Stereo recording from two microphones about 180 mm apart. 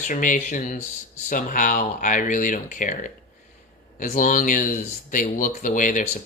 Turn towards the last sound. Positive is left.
turn(degrees=45)  # may be behind; listen again after turning